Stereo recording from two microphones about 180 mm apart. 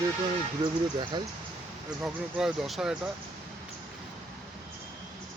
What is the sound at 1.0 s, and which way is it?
Speech, 25° right (ahead or behind).